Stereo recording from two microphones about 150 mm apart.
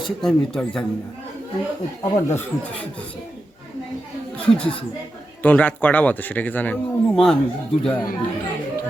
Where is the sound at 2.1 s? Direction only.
15° left (ahead or behind).